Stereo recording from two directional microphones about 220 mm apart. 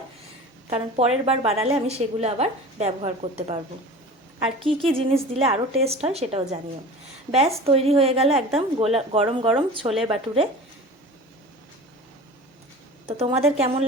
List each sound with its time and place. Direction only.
0.7 s a woman's voice: 30° right (ahead or behind)
4.6 s a woman's voice: 25° right (ahead or behind)
7.6 s a woman's voice: 25° right (ahead or behind)
13.1 s a woman's voice: 30° right (ahead or behind)